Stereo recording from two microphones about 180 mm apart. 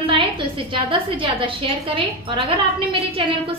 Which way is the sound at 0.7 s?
30° right (ahead or behind).